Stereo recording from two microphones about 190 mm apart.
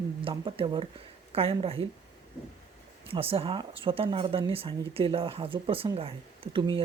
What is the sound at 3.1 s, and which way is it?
Speech, 30° right (ahead or behind).